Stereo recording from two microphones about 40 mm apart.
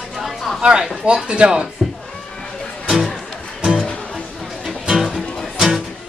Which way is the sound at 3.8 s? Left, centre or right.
Centre.